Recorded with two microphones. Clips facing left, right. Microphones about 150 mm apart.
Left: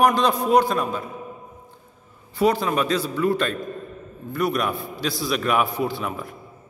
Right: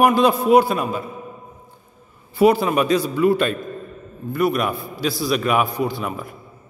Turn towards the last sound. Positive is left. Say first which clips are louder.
# right 2 dB
turn(degrees=0)  # may be behind; listen again after turning